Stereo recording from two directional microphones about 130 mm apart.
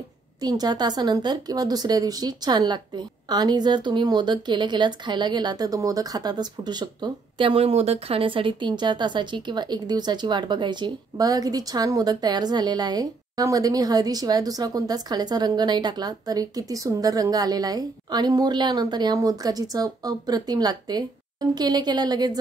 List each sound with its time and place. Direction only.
0.4 s speech: 30° right (ahead or behind)